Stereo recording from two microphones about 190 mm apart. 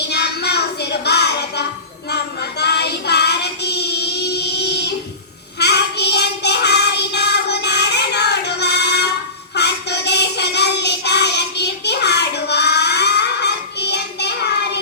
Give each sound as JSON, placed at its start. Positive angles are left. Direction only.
{"t": 0.1, "sound": "music", "side_deg": 60}
{"t": 2.0, "sound": "child singing", "side_deg": 60}